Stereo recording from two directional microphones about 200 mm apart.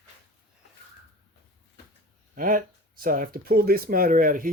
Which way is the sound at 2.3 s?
45° right (ahead or behind).